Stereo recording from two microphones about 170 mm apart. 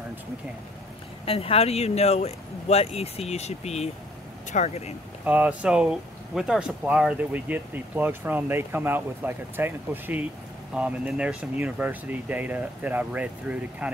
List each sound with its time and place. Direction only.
1.2 s speech: 35° left (ahead or behind)
5.2 s speech: 10° right (ahead or behind)